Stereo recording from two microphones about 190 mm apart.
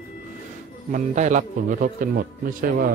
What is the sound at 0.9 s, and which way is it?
Speech, 40° right (ahead or behind).